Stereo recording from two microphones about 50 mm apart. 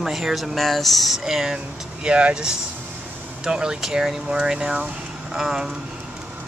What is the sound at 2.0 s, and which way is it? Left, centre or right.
Speech, centre.